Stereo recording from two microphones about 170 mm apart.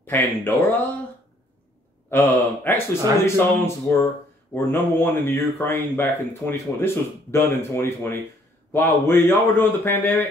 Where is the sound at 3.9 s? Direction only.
10° left (ahead or behind).